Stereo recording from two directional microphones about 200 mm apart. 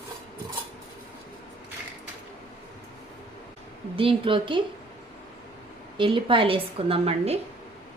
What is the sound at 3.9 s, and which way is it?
Speech, 25° right (ahead or behind).